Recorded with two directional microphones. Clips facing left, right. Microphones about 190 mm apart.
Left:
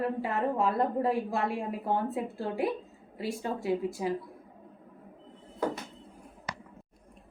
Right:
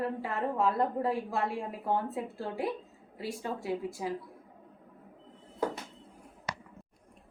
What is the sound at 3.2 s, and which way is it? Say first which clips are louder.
Speech: left 3 dB; 20° left (ahead or behind).